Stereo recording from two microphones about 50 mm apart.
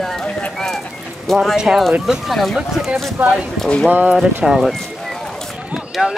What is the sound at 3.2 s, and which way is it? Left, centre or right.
Speech, right.